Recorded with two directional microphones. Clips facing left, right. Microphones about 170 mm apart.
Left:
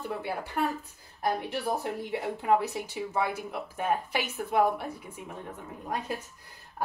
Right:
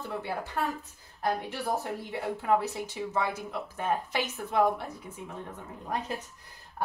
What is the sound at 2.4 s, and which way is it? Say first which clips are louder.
A woman's voice: left 1 dB; 15° left (ahead or behind).